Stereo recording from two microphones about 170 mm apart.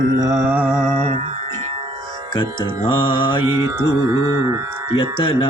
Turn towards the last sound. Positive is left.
turn(degrees=30)  # may be behind; listen again after turning